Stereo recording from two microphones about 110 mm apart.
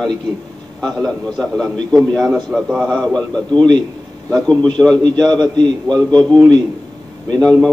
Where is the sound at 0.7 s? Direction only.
Centre (ahead or behind).